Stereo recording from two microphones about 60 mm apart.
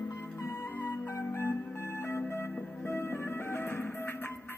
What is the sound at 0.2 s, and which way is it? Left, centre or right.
Music, left.